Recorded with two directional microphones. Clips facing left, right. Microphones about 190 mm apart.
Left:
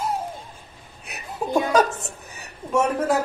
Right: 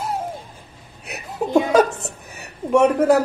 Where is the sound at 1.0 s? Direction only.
65° right (ahead or behind).